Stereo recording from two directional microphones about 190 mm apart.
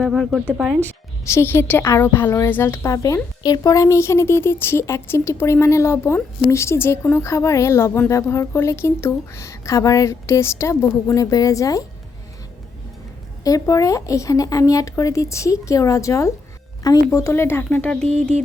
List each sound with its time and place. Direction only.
0.0 s speech: centre (ahead or behind); by 11.9 s 20° left (ahead or behind)
13.4 s speech: 20° left (ahead or behind)